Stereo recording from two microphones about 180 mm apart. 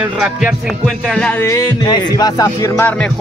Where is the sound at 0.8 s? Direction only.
5° left (ahead or behind).